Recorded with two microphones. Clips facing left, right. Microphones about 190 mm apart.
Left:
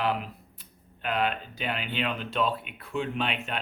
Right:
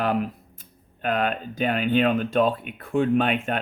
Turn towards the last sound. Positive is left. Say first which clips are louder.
# right 10 dB
turn(degrees=-50)  # may be behind; listen again after turning